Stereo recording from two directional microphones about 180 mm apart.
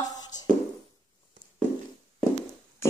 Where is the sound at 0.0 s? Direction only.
20° left (ahead or behind).